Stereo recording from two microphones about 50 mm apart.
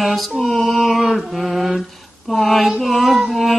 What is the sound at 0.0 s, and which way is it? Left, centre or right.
Mantra, centre.